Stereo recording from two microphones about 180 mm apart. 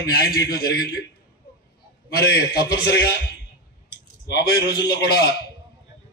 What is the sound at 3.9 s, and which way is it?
A man's voice, 60° left (ahead or behind).